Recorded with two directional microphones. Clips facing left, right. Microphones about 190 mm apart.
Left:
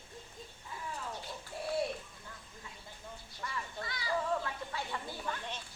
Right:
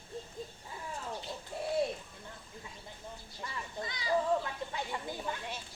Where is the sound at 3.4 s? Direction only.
20° right (ahead or behind).